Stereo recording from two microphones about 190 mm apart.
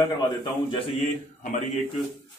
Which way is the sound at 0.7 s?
40° left (ahead or behind).